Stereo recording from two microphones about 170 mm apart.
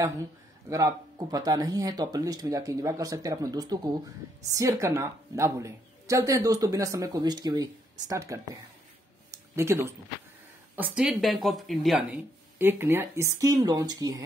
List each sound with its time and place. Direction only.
0.7 s a woman's voice: 20° right (ahead or behind)
9.3 s a sound: 15° right (ahead or behind)
10.8 s speech: 5° right (ahead or behind)
12.5 s a woman's voice: 15° right (ahead or behind)